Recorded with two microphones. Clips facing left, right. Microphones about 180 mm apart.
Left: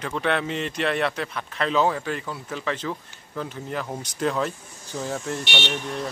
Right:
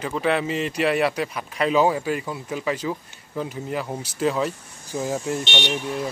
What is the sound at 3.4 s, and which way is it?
Speech, 5° right (ahead or behind).